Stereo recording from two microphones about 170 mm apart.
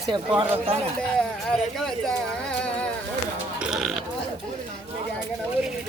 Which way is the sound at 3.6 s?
Centre (ahead or behind).